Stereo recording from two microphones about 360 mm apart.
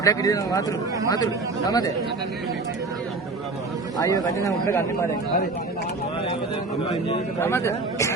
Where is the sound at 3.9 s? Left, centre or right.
Centre.